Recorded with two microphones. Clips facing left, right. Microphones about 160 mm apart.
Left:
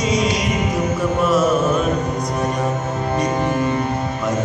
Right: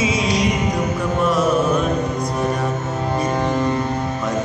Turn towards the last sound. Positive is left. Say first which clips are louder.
# even
turn(degrees=15)  # may be behind; listen again after turning